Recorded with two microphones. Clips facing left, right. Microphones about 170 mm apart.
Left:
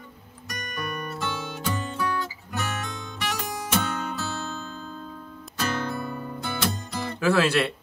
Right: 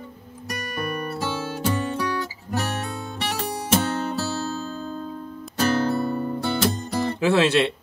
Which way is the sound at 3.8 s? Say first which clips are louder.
Right 5 dB; 40° right (ahead or behind).